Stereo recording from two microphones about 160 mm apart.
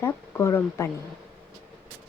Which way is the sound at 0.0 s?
15° left (ahead or behind).